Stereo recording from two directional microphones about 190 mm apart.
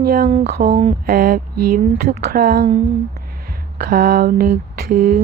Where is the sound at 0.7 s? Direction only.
30° right (ahead or behind).